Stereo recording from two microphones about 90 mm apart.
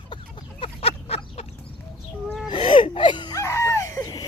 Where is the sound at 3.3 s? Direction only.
35° left (ahead or behind).